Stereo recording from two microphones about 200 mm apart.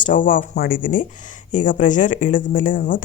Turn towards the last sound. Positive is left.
turn(degrees=45)  # may be behind; listen again after turning